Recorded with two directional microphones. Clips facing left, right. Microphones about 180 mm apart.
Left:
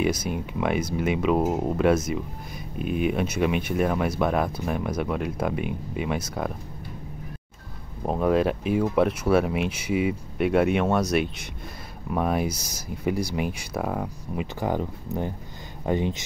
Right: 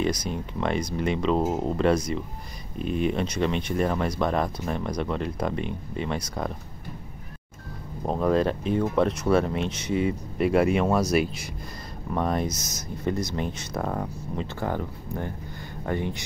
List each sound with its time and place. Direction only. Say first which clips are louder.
0.0 s speech: left 2 dB; 5° left (ahead or behind)
8.0 s speech: left 1 dB; 5° left (ahead or behind)